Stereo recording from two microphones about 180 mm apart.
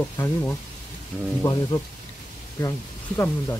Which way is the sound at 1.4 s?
15° left (ahead or behind).